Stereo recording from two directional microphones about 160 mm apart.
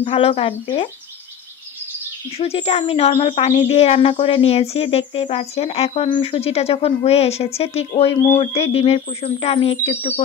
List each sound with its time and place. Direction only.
0.0 s speech: 35° left (ahead or behind)
2.3 s speech: 40° left (ahead or behind)